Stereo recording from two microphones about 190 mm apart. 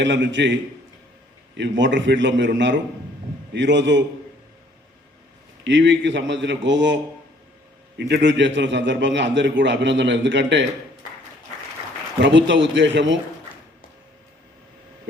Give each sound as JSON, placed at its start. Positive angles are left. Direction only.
{"t": 0.0, "sound": "a man's voice", "side_deg": -70}
{"t": 1.5, "sound": "a man's voice", "side_deg": -70}
{"t": 5.6, "sound": "a man's voice", "side_deg": -70}
{"t": 12.2, "sound": "a man's voice", "side_deg": -70}